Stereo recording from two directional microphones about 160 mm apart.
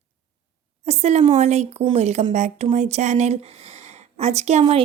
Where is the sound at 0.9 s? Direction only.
40° right (ahead or behind).